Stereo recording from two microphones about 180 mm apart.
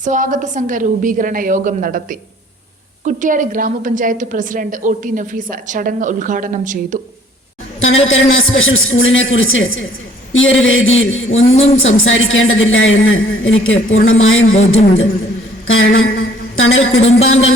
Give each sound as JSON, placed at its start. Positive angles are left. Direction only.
{"t": 0.0, "sound": "a woman's voice", "side_deg": -45}
{"t": 8.0, "sound": "a woman's voice", "side_deg": 90}
{"t": 11.4, "sound": "a man's voice", "side_deg": 35}
{"t": 11.8, "sound": "a woman's voice", "side_deg": 90}
{"t": 15.6, "sound": "a sound", "side_deg": 90}
{"t": 17.2, "sound": "a woman's voice", "side_deg": 90}